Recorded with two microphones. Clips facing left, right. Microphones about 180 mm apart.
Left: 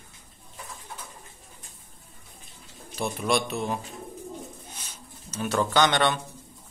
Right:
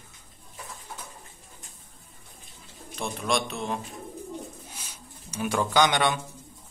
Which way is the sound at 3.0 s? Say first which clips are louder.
Left 2 dB; 5° left (ahead or behind).